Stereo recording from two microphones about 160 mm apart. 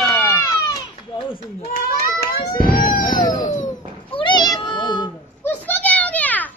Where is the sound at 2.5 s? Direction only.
60° left (ahead or behind).